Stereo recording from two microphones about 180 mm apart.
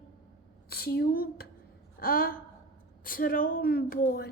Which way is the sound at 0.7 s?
60° left (ahead or behind).